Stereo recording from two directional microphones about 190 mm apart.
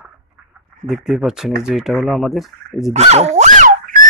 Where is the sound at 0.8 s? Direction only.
Centre (ahead or behind).